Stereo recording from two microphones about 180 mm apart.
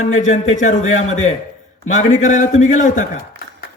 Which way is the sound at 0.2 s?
40° left (ahead or behind).